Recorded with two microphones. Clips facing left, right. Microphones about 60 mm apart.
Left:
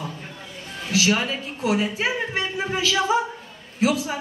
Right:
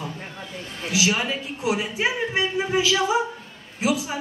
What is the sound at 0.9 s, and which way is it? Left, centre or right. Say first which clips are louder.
A man's voice: left 1 dB; centre.